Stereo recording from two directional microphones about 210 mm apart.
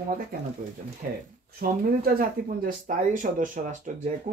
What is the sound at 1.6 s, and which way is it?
Speech, 45° right (ahead or behind).